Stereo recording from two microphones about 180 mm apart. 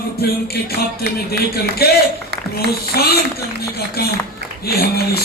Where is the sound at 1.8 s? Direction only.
60° left (ahead or behind).